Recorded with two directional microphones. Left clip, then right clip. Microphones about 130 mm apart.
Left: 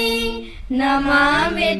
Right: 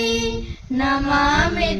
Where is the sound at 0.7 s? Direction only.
Centre (ahead or behind).